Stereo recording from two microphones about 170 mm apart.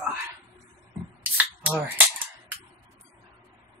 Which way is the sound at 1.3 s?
10° right (ahead or behind).